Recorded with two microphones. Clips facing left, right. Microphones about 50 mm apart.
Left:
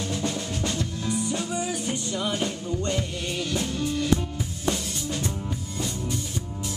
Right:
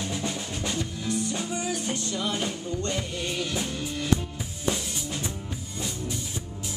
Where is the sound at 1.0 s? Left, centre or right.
Centre.